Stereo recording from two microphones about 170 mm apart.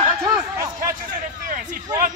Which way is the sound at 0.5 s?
20° right (ahead or behind).